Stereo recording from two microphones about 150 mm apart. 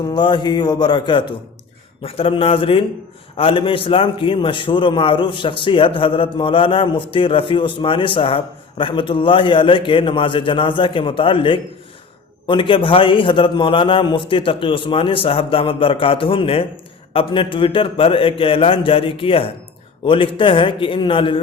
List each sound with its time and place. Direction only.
0.1 s a man's voice: 30° left (ahead or behind)